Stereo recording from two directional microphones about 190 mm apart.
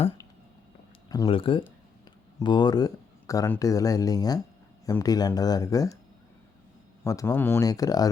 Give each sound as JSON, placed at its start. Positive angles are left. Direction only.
{"t": 1.1, "sound": "speech", "side_deg": 25}
{"t": 7.0, "sound": "speech", "side_deg": 15}